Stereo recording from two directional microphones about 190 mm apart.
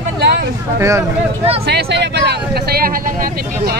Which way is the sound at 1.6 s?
60° right (ahead or behind).